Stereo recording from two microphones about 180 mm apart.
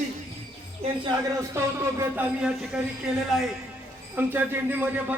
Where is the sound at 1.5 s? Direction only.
15° right (ahead or behind).